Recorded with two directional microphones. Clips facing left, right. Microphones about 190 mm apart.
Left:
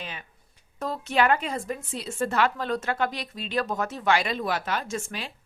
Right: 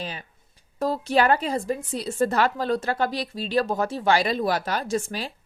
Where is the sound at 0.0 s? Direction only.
35° right (ahead or behind).